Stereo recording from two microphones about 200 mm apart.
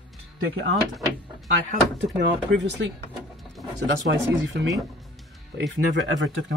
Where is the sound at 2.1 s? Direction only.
60° right (ahead or behind).